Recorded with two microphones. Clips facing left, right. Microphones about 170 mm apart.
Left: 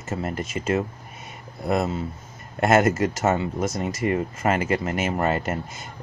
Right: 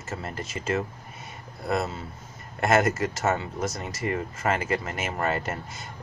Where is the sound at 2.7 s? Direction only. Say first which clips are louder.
Left 4 dB; 25° left (ahead or behind).